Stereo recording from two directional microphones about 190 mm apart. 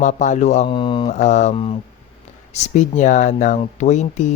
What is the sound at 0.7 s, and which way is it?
Mantra, 25° left (ahead or behind).